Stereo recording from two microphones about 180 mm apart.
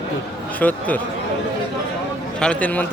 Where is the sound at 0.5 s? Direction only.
10° left (ahead or behind).